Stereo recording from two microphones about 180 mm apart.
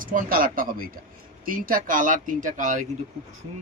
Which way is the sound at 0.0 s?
50° right (ahead or behind).